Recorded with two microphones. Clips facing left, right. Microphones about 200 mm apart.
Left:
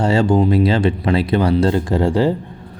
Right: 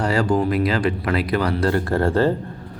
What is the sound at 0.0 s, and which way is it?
Speech, 25° left (ahead or behind).